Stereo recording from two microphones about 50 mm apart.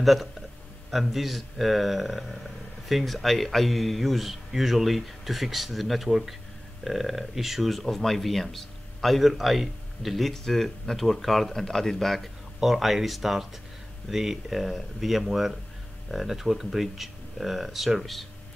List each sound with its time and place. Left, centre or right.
0.0 s speech: centre